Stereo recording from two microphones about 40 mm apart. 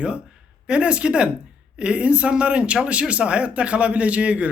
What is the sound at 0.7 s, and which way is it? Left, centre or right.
Speech, right.